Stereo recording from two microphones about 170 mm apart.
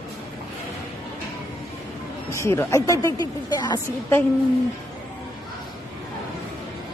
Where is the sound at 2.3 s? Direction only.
15° left (ahead or behind).